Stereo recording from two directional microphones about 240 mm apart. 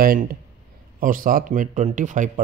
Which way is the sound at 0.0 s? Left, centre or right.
Right.